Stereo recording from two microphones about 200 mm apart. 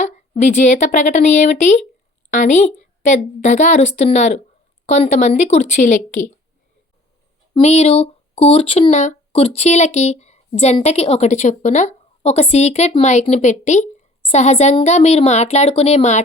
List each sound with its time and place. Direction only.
0.0 s a woman's voice: 35° left (ahead or behind)
7.5 s speech: 35° left (ahead or behind)